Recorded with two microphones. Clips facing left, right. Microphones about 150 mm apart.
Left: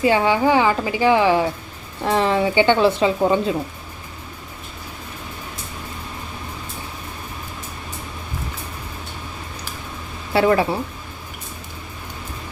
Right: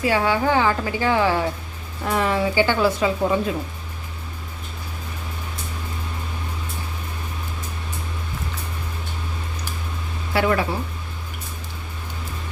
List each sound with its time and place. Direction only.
0.0 s speech: 20° left (ahead or behind)
2.0 s a woman's voice: 25° left (ahead or behind)
10.3 s a woman's voice: 30° left (ahead or behind)